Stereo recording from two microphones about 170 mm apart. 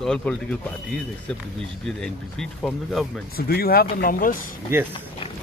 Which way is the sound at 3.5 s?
60° left (ahead or behind).